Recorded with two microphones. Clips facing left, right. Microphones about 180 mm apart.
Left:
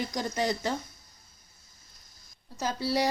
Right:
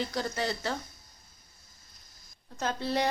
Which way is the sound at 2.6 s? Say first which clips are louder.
Left 1 dB; 10° left (ahead or behind).